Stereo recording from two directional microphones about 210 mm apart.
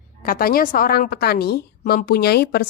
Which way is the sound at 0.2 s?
45° left (ahead or behind).